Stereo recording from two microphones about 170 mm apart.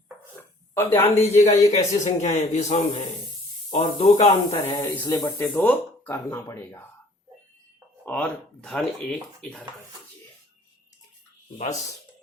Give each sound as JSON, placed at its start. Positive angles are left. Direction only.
{"t": 0.3, "sound": "a sound", "side_deg": 15}
{"t": 1.2, "sound": "a man's voice", "side_deg": 40}
{"t": 4.8, "sound": "speech", "side_deg": 20}
{"t": 8.0, "sound": "speech", "side_deg": 10}